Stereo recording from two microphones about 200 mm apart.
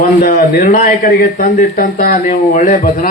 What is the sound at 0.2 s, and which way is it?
Speech, 45° left (ahead or behind).